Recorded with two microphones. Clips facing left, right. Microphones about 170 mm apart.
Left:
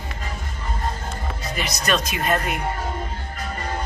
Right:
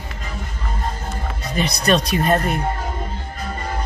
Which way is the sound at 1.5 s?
30° right (ahead or behind).